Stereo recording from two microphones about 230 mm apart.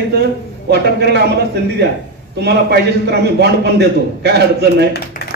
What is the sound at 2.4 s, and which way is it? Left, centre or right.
A man's voice, right.